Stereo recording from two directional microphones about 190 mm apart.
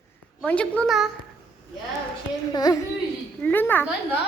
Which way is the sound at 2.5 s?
20° left (ahead or behind).